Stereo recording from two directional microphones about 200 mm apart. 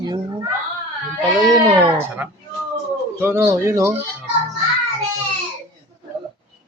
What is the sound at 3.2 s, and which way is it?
Speech, 10° right (ahead or behind).